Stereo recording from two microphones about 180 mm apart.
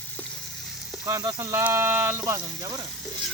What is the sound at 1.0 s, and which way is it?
Speech, 20° right (ahead or behind).